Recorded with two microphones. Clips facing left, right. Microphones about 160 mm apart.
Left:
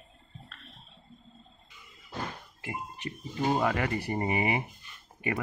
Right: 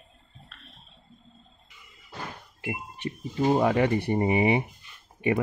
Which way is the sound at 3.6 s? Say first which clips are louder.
Right 6 dB; 25° right (ahead or behind).